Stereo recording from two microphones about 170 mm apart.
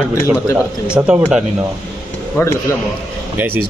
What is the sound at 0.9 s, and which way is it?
Speech, 5° right (ahead or behind).